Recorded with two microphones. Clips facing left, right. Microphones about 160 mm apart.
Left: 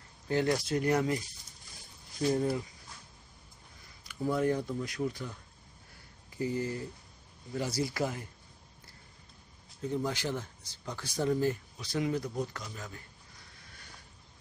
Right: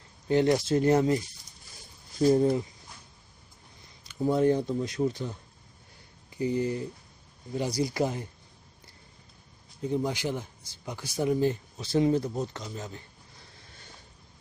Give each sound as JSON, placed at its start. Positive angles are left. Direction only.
{"t": 0.3, "sound": "speech", "side_deg": -20}
{"t": 3.8, "sound": "speech", "side_deg": -25}
{"t": 9.8, "sound": "speech", "side_deg": -15}
{"t": 13.7, "sound": "a sound", "side_deg": -25}